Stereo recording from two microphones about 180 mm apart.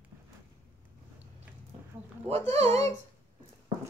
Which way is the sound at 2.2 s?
35° right (ahead or behind).